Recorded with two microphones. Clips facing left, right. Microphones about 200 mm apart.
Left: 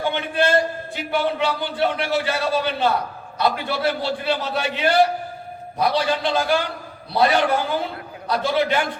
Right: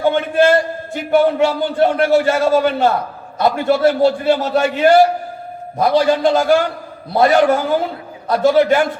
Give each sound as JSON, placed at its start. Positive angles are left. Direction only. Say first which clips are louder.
{"t": 0.0, "sound": "a man's voice", "louder": "right 8 dB", "side_deg": -45}